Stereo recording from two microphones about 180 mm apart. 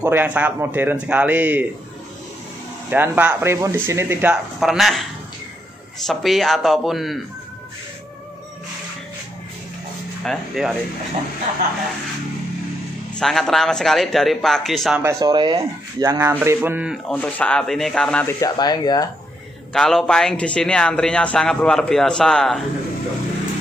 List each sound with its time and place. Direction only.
0.0 s speech: 10° right (ahead or behind)
2.9 s speech: 10° right (ahead or behind)
4.6 s a man's voice: centre (ahead or behind)
6.0 s a man's voice: centre (ahead or behind)
10.2 s a man's voice: centre (ahead or behind)
13.2 s a man's voice: centre (ahead or behind)
15.0 s speech: 15° right (ahead or behind)
17.1 s a man's voice: 5° left (ahead or behind)
18.4 s speech: 20° left (ahead or behind)
19.7 s a man's voice: centre (ahead or behind)